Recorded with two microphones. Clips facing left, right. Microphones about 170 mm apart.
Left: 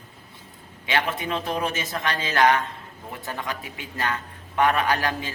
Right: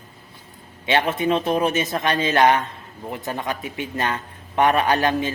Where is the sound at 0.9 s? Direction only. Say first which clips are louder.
Right 6 dB; 25° right (ahead or behind).